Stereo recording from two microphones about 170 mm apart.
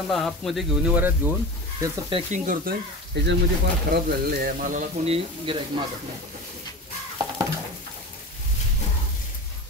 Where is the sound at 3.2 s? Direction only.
90° right.